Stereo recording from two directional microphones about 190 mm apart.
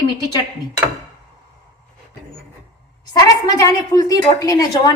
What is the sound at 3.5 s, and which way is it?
A woman's voice, 15° left (ahead or behind).